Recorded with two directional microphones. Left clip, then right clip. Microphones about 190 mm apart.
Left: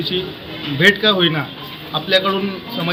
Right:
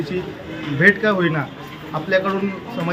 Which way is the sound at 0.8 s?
5° left (ahead or behind).